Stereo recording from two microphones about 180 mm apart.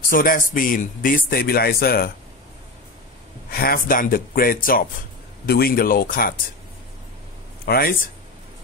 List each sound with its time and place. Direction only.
0.1 s speech: 50° left (ahead or behind)
3.4 s speech: 55° left (ahead or behind)
7.6 s speech: 55° left (ahead or behind)